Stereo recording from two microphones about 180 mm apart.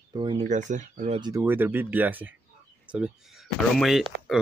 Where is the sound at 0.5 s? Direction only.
45° right (ahead or behind).